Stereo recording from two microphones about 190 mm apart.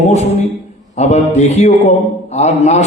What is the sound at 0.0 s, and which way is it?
A man's voice, 35° left (ahead or behind).